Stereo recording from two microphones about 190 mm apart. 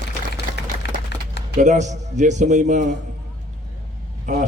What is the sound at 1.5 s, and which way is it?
A man's voice, 40° right (ahead or behind).